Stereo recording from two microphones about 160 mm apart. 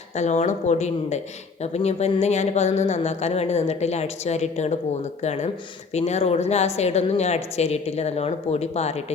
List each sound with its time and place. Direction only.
0.2 s speech: 45° left (ahead or behind)